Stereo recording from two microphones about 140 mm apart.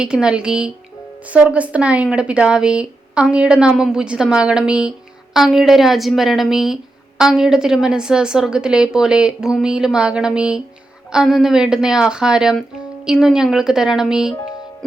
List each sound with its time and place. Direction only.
0.0 s a woman's voice: 5° right (ahead or behind)